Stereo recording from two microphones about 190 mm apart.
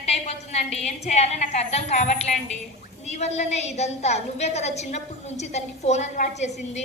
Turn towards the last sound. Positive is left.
turn(degrees=35)  # may be behind; listen again after turning